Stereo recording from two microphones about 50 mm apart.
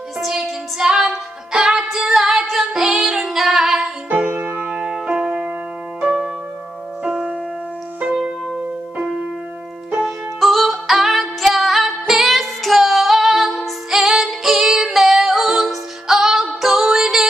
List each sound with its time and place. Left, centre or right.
0.2 s music: centre
1.9 s female singing: centre
4.1 s music: right
4.7 s keyboard: centre
5.0 s music: right
9.9 s music: centre